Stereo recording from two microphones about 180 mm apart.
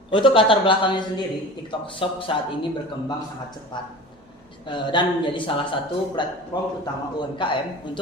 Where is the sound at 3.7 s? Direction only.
25° left (ahead or behind).